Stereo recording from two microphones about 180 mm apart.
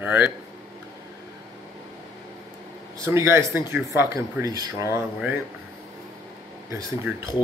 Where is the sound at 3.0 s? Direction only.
15° right (ahead or behind).